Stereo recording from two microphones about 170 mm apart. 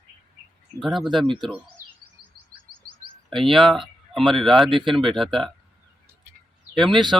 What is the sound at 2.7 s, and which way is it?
Chirp, 30° right (ahead or behind).